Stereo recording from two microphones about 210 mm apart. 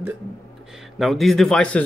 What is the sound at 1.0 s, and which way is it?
Speech, centre (ahead or behind).